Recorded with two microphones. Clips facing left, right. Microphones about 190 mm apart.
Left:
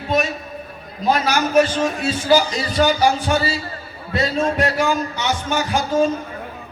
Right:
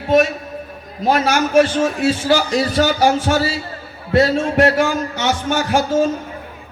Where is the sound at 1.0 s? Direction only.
70° right (ahead or behind).